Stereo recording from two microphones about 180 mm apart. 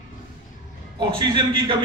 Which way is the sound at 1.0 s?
25° right (ahead or behind).